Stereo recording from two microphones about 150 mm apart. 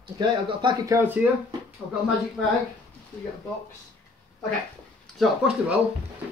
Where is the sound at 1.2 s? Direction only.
10° right (ahead or behind).